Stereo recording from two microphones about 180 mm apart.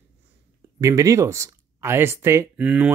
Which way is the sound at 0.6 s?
20° right (ahead or behind).